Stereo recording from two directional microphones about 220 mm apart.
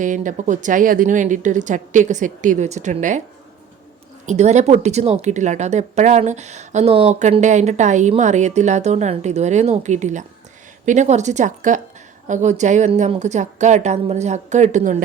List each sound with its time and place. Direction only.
0.0 s speech: 35° right (ahead or behind)
4.3 s speech: 30° right (ahead or behind)